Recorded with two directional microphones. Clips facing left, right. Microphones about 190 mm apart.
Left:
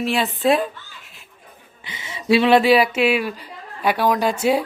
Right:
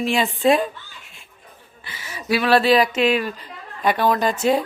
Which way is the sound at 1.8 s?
25° left (ahead or behind).